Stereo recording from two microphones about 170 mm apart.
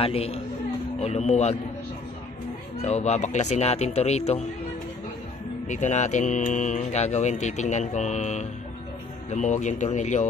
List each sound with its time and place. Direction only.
0.0 s speech: 35° left (ahead or behind)
2.8 s speech: 40° left (ahead or behind)
5.7 s speech: 45° left (ahead or behind)